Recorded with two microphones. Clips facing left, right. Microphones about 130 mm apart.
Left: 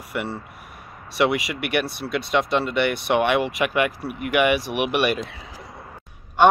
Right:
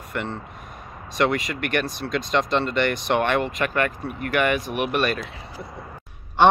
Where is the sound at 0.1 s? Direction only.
10° left (ahead or behind).